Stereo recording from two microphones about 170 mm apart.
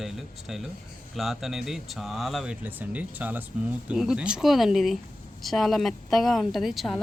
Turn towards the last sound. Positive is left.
turn(degrees=0)  # may be behind; listen again after turning